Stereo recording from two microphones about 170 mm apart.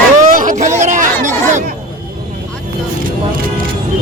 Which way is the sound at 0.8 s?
50° right (ahead or behind).